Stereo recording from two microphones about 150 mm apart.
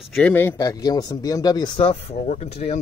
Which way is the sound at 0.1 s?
10° left (ahead or behind).